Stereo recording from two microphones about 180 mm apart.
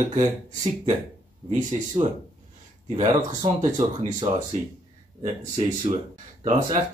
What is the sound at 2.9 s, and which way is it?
Speech, 35° right (ahead or behind).